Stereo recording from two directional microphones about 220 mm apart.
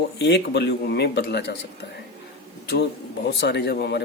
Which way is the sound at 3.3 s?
50° left (ahead or behind).